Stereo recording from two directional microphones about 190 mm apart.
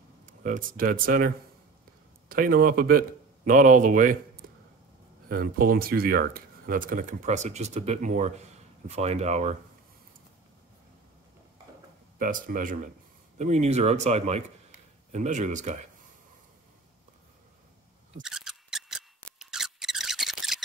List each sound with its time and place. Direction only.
0.3 s speech: 45° right (ahead or behind)
12.2 s speech: 45° right (ahead or behind)
18.2 s scissors: centre (ahead or behind)